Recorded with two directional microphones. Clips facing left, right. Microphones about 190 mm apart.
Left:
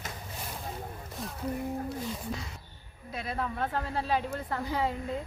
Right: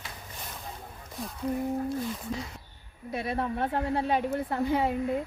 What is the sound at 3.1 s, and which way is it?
A woman's voice, 20° right (ahead or behind).